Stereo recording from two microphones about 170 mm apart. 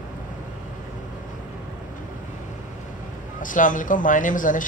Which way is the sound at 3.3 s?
50° left (ahead or behind).